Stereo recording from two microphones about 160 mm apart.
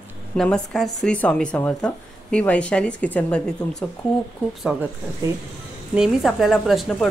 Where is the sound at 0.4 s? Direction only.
5° left (ahead or behind).